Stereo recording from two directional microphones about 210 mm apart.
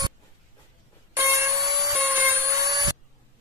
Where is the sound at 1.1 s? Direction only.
10° right (ahead or behind).